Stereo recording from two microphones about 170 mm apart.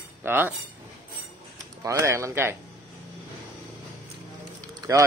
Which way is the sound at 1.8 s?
15° right (ahead or behind).